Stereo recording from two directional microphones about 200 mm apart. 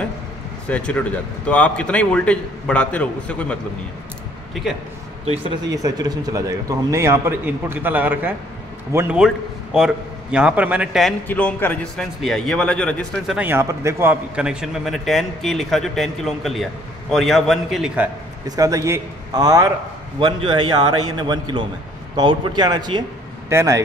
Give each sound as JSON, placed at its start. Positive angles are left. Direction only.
{"t": 0.7, "sound": "a man's voice", "side_deg": 5}
{"t": 4.6, "sound": "a man's voice", "side_deg": 0}
{"t": 5.2, "sound": "speech", "side_deg": -30}
{"t": 5.7, "sound": "a man's voice", "side_deg": -15}
{"t": 13.4, "sound": "a man's voice", "side_deg": -10}
{"t": 18.6, "sound": "a man's voice", "side_deg": -15}